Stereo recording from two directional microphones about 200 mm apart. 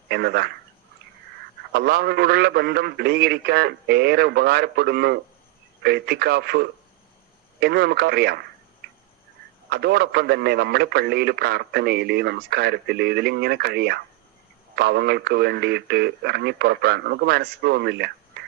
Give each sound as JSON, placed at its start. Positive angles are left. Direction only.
{"t": 0.1, "sound": "a man's voice", "side_deg": -55}
{"t": 1.7, "sound": "a man's voice", "side_deg": -55}
{"t": 9.6, "sound": "a man's voice", "side_deg": -55}